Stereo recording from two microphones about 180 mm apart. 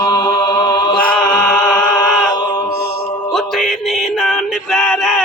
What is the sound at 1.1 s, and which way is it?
Chant, centre (ahead or behind).